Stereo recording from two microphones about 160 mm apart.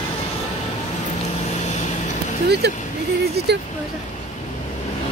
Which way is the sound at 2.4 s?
90° right.